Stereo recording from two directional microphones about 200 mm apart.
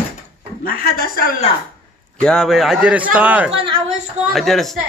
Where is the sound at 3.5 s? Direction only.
30° right (ahead or behind).